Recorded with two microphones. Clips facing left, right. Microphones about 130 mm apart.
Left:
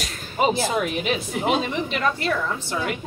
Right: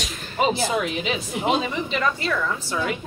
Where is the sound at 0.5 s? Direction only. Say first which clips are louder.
Left 1 dB; 50° left (ahead or behind).